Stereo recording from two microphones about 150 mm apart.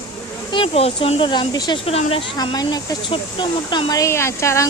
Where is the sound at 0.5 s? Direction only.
40° left (ahead or behind).